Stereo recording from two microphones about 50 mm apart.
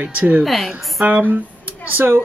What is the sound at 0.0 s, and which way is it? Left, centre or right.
Speech, right.